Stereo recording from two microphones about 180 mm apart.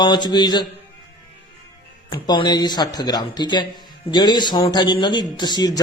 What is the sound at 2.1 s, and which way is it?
A man's voice, 20° left (ahead or behind).